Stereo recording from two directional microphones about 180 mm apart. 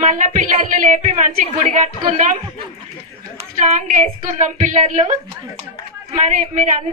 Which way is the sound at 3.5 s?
45° right (ahead or behind).